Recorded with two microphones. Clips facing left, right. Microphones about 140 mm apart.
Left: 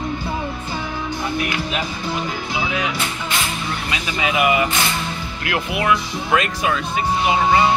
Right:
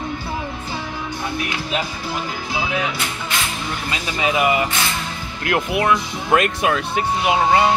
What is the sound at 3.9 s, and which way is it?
Speech, 30° right (ahead or behind).